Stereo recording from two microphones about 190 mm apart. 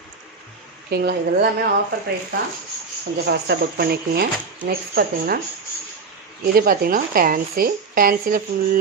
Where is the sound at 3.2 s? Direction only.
60° right (ahead or behind).